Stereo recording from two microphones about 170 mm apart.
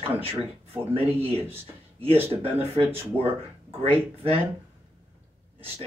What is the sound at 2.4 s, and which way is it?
Speech, 35° right (ahead or behind).